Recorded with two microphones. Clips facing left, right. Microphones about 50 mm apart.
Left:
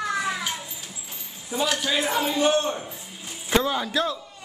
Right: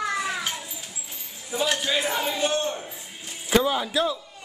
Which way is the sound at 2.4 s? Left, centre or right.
Left.